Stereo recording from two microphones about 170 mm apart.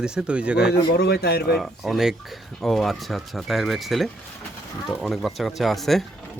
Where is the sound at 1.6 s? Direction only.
Centre (ahead or behind).